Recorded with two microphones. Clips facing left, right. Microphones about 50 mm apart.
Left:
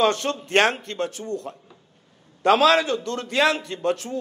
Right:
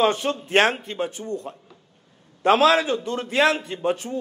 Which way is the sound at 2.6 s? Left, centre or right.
Centre.